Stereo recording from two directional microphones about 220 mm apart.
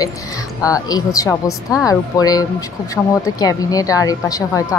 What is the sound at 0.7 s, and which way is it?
A woman's voice, 15° left (ahead or behind).